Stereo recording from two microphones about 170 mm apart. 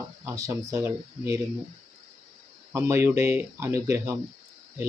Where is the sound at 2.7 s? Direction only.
15° right (ahead or behind).